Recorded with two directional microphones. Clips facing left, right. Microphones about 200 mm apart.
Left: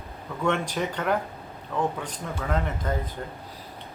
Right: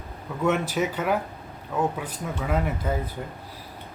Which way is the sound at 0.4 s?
5° right (ahead or behind).